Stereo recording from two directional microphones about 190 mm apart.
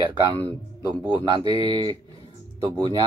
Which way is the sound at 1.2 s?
30° left (ahead or behind).